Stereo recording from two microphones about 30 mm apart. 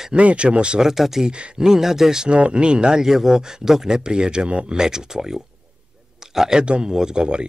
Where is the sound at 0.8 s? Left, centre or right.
Centre.